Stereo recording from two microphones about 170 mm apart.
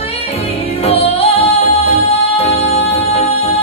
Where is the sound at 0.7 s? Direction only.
40° left (ahead or behind).